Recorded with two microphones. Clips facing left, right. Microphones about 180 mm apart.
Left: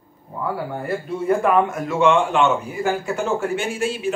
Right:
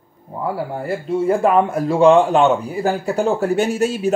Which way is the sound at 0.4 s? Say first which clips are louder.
Right 2 dB; 30° right (ahead or behind).